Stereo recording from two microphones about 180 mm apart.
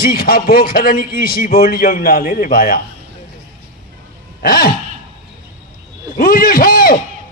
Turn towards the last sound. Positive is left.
turn(degrees=55)  # may be behind; listen again after turning